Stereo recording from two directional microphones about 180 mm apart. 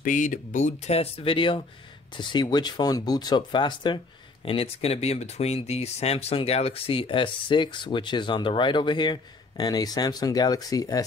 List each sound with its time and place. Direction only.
0.0 s speech: 45° left (ahead or behind); by 11.1 s 20° left (ahead or behind)